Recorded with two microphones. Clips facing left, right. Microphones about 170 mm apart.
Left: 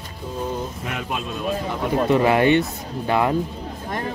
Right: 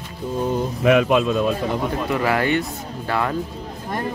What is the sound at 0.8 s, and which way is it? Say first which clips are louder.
Speech: right 13 dB; 90° right.